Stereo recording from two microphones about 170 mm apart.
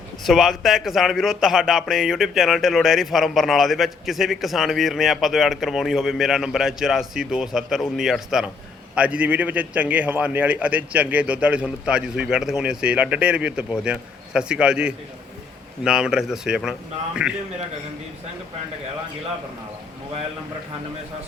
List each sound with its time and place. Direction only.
0.3 s a man's voice: centre (ahead or behind)